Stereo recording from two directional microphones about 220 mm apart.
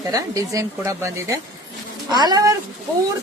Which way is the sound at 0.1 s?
15° right (ahead or behind).